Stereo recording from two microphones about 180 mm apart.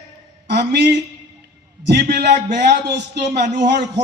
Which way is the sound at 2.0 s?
65° right (ahead or behind).